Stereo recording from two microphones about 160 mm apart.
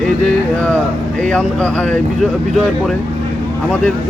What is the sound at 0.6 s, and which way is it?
Speech, 10° left (ahead or behind).